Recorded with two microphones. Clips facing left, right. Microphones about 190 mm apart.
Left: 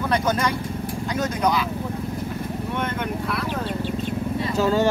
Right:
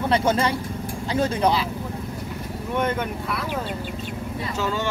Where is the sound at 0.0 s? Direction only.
25° right (ahead or behind).